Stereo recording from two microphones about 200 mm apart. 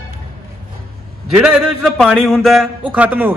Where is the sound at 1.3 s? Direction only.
5° right (ahead or behind).